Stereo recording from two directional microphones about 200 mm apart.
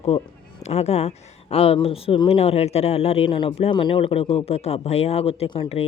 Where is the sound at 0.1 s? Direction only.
30° left (ahead or behind).